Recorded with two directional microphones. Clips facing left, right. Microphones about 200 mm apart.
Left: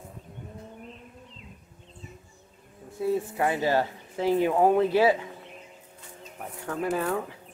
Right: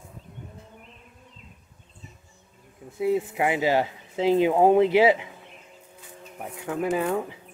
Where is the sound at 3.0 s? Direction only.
15° right (ahead or behind).